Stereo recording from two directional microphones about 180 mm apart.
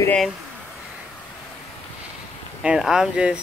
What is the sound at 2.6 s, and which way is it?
Speech, 5° right (ahead or behind).